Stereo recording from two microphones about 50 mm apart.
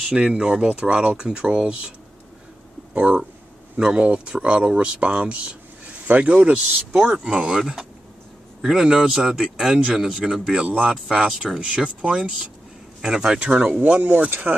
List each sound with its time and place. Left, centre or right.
0.1 s speech: centre
0.7 s speech: right
2.9 s speech: right
6.0 s speech: right
6.3 s speech: right
13.0 s speech: centre
13.6 s speech: right